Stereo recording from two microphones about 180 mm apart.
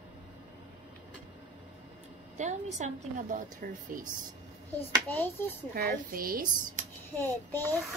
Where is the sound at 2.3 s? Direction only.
40° right (ahead or behind).